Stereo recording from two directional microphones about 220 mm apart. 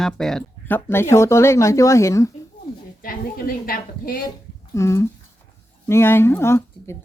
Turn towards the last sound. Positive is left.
turn(degrees=10)  # may be behind; listen again after turning